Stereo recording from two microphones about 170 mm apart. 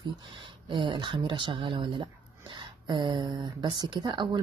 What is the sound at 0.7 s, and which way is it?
Speech, 25° right (ahead or behind).